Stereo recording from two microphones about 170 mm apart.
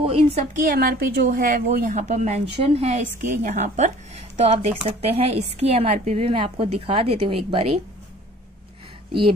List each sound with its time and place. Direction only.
0.0 s a woman's voice: 35° right (ahead or behind)
0.6 s a woman's voice: 55° right (ahead or behind); by 7.8 s 35° right (ahead or behind)